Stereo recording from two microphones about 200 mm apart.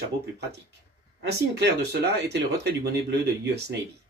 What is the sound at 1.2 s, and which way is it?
Speech, 60° right (ahead or behind).